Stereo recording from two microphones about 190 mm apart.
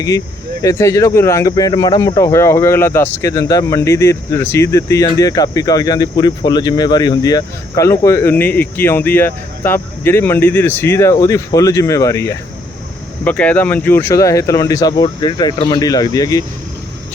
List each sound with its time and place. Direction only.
0.6 s speech: 15° left (ahead or behind)